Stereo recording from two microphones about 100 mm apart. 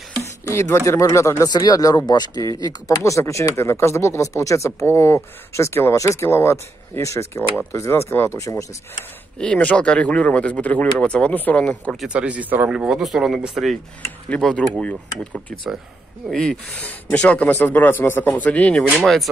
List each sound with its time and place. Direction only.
0.5 s speech: 30° left (ahead or behind)
1.5 s speech: 40° left (ahead or behind)
9.4 s speech: 10° left (ahead or behind)
12.1 s speech: 15° right (ahead or behind)
12.7 s speech: 5° right (ahead or behind)
16.3 s speech: 10° left (ahead or behind)